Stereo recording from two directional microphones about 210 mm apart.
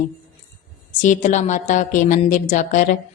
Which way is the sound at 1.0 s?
35° left (ahead or behind).